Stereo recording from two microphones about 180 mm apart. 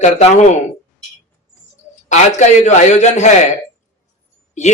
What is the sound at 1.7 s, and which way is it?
Speech, 40° left (ahead or behind).